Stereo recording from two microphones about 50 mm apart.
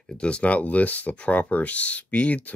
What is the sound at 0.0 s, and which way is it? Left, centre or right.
Speech, centre.